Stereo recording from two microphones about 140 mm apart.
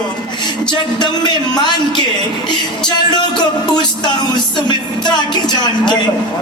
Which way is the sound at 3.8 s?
30° left (ahead or behind).